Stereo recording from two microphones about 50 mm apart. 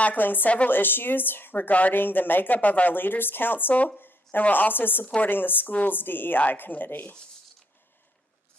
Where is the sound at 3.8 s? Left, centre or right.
Left.